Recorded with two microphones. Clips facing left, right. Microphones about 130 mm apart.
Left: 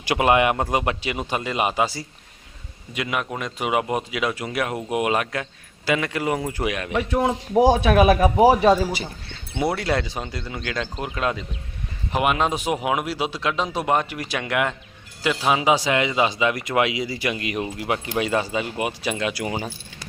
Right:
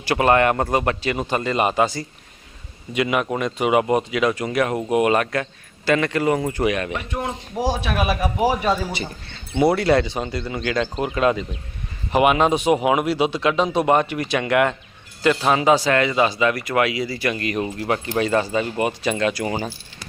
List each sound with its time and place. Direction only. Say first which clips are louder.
0.0 s a man's voice: right 2 dB; 15° left (ahead or behind)
7.5 s speech: left 7 dB; 55° left (ahead or behind)
8.9 s a man's voice: even; 5° left (ahead or behind)